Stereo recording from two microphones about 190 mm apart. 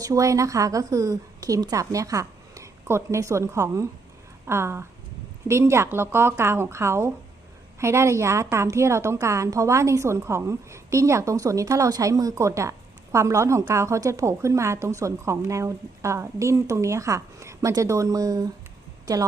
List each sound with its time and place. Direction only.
0.0 s a woman's voice: 15° right (ahead or behind)